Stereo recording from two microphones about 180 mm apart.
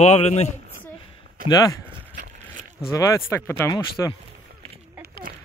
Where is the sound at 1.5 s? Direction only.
20° left (ahead or behind).